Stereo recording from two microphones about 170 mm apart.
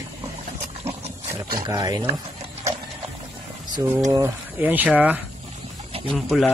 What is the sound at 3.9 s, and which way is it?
Speech, 20° right (ahead or behind).